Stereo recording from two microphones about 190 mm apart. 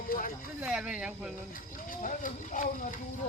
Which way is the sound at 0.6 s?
5° right (ahead or behind).